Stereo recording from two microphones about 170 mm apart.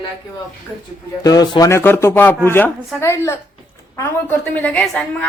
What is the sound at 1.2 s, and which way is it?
A woman's voice, 20° left (ahead or behind).